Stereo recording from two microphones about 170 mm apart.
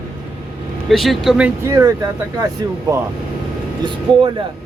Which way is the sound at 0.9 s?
Centre (ahead or behind).